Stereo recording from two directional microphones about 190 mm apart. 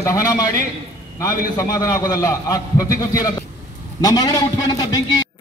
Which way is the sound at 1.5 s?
15° left (ahead or behind).